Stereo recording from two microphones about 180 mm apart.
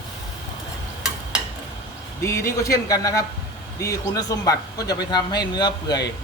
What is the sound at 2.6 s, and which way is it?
Speech, 20° left (ahead or behind).